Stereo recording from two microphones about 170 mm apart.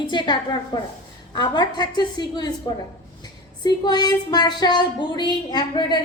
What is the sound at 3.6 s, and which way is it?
Speech, 25° left (ahead or behind).